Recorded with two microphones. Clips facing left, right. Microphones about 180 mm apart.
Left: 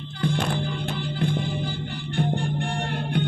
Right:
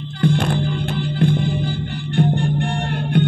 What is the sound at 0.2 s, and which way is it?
Music, 65° right (ahead or behind).